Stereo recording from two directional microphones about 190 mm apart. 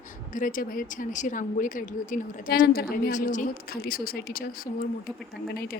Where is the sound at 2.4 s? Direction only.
75° left (ahead or behind).